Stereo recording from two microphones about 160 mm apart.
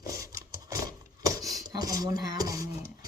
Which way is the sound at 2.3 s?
20° right (ahead or behind).